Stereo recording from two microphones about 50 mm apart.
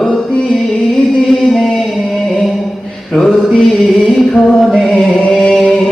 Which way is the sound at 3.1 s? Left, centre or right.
Centre.